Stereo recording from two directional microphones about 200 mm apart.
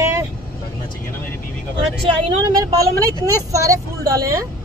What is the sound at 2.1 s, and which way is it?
Speech, 15° right (ahead or behind).